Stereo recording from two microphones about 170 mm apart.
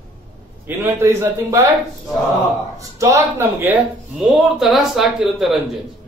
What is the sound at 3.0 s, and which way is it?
Speech, 15° right (ahead or behind).